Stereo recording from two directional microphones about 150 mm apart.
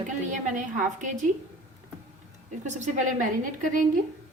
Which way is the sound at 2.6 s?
55° right (ahead or behind).